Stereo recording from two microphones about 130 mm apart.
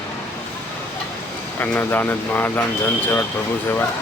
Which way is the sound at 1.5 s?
15° left (ahead or behind).